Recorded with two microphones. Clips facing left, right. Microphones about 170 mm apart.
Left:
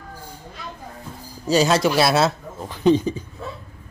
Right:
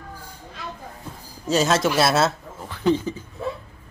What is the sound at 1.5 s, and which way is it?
Speech, centre (ahead or behind).